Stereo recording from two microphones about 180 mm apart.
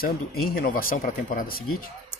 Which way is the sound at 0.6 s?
50° left (ahead or behind).